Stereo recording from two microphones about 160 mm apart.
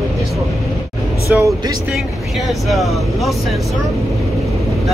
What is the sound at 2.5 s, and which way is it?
Speech, centre (ahead or behind).